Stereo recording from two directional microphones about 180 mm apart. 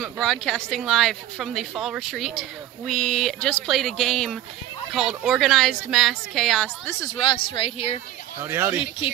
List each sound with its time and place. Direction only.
0.0 s speech: centre (ahead or behind)
7.2 s speech: 30° left (ahead or behind)
8.5 s speech: 10° right (ahead or behind)